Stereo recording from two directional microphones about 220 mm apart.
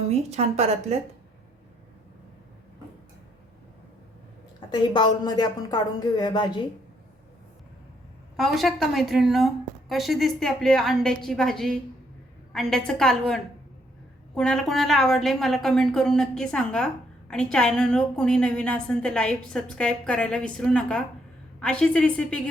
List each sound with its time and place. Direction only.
0.1 s a woman's voice: 30° right (ahead or behind)
4.7 s speech: 20° left (ahead or behind)
8.4 s a woman's voice: centre (ahead or behind)